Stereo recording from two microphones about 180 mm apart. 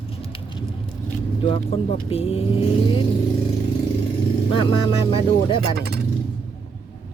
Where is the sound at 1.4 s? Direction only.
30° left (ahead or behind).